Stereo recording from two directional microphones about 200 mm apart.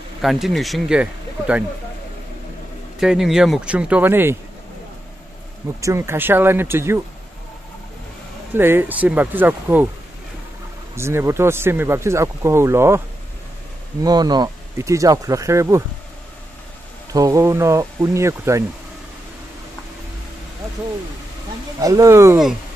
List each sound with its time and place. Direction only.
0.2 s speech: centre (ahead or behind)
3.0 s speech: centre (ahead or behind)
5.8 s speech: 15° right (ahead or behind)
8.5 s speech: 10° right (ahead or behind)
11.0 s speech: 15° right (ahead or behind)
14.0 s speech: 20° right (ahead or behind)
17.1 s speech: 15° right (ahead or behind)
21.7 s speech: 15° right (ahead or behind)